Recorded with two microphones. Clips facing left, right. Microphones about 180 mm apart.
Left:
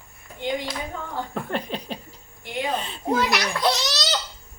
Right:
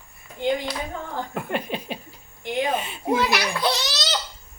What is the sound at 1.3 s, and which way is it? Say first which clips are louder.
A child's voice: right 1 dB; 10° right (ahead or behind).